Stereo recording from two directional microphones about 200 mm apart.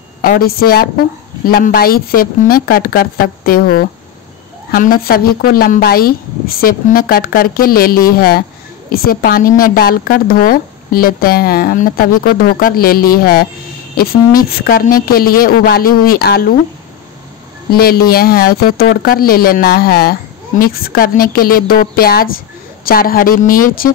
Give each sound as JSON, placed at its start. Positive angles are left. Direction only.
{"t": 0.2, "sound": "speech", "side_deg": 50}
{"t": 17.6, "sound": "speech", "side_deg": 50}